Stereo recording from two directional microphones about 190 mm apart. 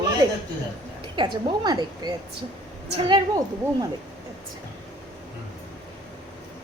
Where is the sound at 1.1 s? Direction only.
25° right (ahead or behind).